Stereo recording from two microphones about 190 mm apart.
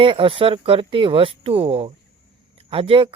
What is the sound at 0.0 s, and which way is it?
Speech, 25° right (ahead or behind).